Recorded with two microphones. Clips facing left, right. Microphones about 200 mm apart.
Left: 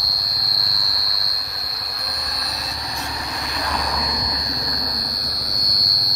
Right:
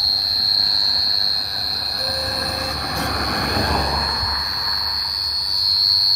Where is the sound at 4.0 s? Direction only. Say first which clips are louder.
Left 1 dB; 15° left (ahead or behind).